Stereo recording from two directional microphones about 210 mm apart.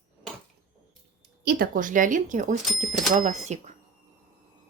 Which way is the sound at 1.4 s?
40° right (ahead or behind).